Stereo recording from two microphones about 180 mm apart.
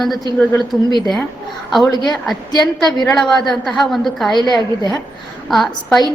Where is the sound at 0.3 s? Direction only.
5° left (ahead or behind).